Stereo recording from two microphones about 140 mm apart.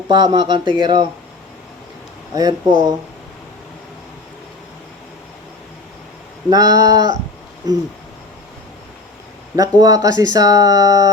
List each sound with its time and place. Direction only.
0.1 s speech: 30° right (ahead or behind)
2.3 s speech: 30° right (ahead or behind)
6.5 s speech: 30° right (ahead or behind)
9.6 s speech: 25° right (ahead or behind)